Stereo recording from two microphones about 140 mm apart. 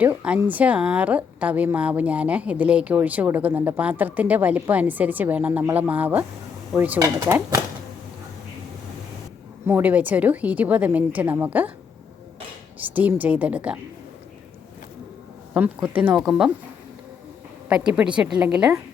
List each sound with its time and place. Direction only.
0.0 s a woman's voice: 10° right (ahead or behind)
9.6 s a woman's voice: 15° right (ahead or behind)
12.8 s a woman's voice: 10° right (ahead or behind)
15.5 s a woman's voice: 10° right (ahead or behind)
17.7 s a woman's voice: 5° right (ahead or behind)